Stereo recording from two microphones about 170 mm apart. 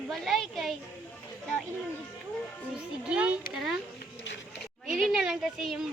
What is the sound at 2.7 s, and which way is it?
A child's voice, 10° right (ahead or behind).